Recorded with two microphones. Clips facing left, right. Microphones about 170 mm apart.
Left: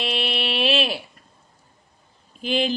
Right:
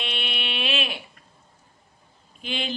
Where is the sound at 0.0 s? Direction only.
35° left (ahead or behind).